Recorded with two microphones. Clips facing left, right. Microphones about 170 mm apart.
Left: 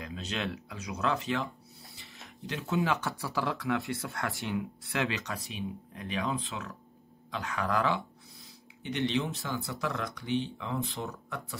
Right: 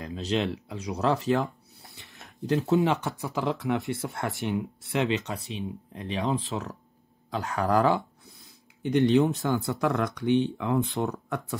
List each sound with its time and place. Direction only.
0.0 s speech: 35° right (ahead or behind)
2.8 s speech: 20° right (ahead or behind)
6.5 s speech: 40° right (ahead or behind); by 11.4 s 60° right (ahead or behind)